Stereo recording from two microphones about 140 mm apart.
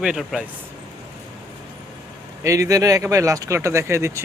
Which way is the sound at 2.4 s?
25° right (ahead or behind).